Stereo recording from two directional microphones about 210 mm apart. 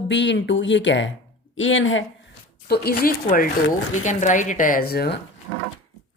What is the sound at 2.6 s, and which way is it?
A woman's voice, 50° left (ahead or behind).